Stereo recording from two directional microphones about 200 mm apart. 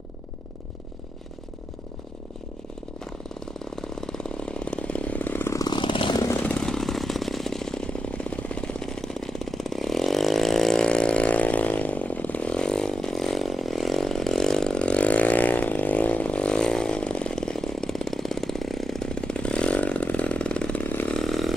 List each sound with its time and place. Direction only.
3.7 s chainsaw: centre (ahead or behind)